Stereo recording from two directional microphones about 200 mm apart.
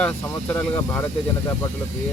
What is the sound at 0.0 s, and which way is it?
A man's voice, 5° left (ahead or behind).